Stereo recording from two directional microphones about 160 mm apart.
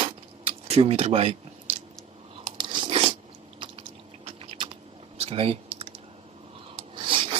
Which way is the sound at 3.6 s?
35° right (ahead or behind).